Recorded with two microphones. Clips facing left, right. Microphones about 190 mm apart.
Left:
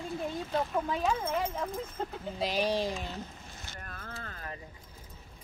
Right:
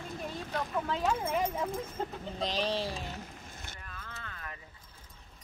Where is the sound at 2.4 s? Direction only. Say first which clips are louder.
Left 3 dB; 10° left (ahead or behind).